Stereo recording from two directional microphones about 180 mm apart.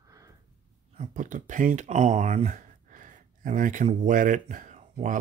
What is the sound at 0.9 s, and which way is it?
Speech, 40° right (ahead or behind).